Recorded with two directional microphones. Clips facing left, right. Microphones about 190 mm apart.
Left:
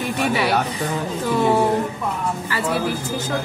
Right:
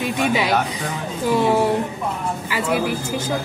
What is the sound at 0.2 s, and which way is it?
Speech, 15° right (ahead or behind).